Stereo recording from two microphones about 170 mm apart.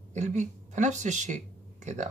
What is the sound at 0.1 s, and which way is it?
Speech, 45° right (ahead or behind).